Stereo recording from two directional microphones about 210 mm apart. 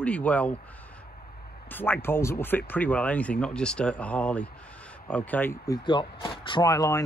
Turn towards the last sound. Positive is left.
turn(degrees=15)  # may be behind; listen again after turning